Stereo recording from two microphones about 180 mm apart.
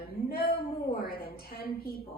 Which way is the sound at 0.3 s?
60° left (ahead or behind).